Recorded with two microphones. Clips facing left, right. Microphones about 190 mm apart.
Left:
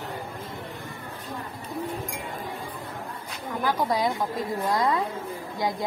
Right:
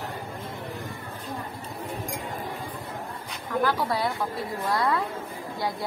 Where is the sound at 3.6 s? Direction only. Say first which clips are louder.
Left 1 dB; 15° left (ahead or behind).